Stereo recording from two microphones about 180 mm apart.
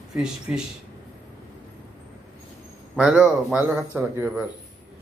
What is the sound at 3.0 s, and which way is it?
A man's voice, 5° right (ahead or behind).